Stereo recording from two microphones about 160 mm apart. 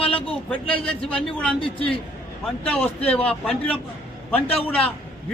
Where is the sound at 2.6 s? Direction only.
10° left (ahead or behind).